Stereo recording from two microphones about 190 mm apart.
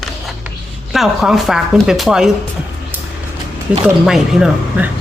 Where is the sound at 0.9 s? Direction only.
Centre (ahead or behind).